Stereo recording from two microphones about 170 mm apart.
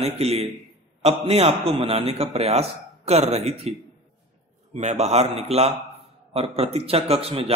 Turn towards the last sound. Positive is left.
turn(degrees=-35)  # may be behind; listen again after turning